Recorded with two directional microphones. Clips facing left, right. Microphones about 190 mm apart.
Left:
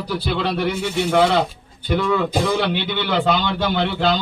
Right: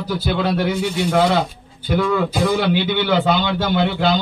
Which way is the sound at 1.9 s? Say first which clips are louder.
Right 1 dB; 5° right (ahead or behind).